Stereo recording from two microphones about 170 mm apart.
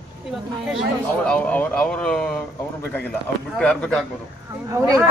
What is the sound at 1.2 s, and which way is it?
A woman's voice, 10° left (ahead or behind).